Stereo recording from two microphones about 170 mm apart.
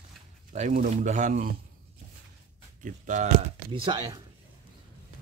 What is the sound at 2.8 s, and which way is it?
Speech, 50° right (ahead or behind).